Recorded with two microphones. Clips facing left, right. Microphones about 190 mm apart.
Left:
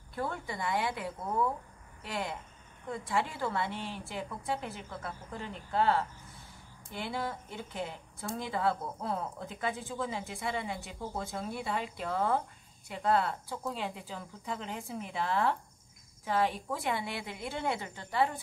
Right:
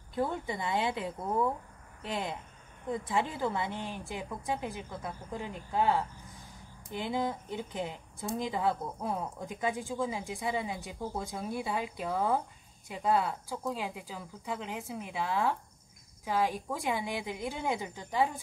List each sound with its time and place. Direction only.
0.1 s a woman's voice: 20° right (ahead or behind)